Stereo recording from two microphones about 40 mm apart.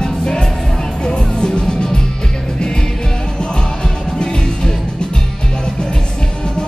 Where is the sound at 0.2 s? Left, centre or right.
Centre.